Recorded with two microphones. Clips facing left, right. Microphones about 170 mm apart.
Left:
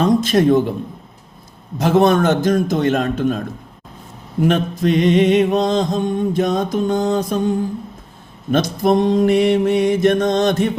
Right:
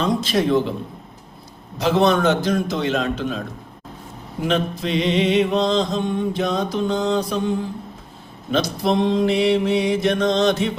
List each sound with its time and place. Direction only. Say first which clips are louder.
0.0 s a man's voice: left 6 dB; 50° left (ahead or behind)
1.8 s mantra: left 3 dB; 50° left (ahead or behind)
4.4 s mantra: left 5 dB; 50° left (ahead or behind)
8.4 s mantra: left 4 dB; 50° left (ahead or behind)